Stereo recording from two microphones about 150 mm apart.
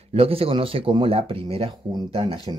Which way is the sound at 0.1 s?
40° right (ahead or behind).